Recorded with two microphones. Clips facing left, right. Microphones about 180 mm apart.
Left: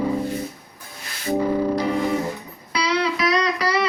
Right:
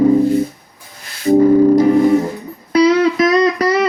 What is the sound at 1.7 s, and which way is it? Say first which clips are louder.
Music: right 11 dB; 50° right (ahead or behind).